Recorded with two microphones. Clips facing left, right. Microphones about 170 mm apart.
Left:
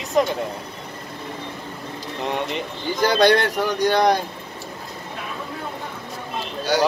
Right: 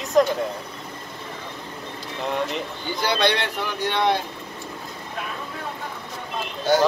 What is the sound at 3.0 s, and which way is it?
Speech, 40° left (ahead or behind).